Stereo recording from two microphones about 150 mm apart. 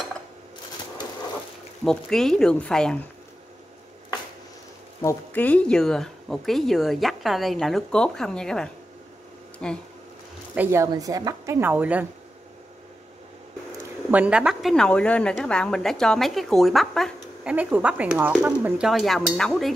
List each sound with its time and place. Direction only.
1.9 s speech: 5° left (ahead or behind)
5.0 s speech: 10° left (ahead or behind)
10.5 s speech: 15° right (ahead or behind)
14.1 s speech: 10° right (ahead or behind)
17.6 s speech: 10° right (ahead or behind)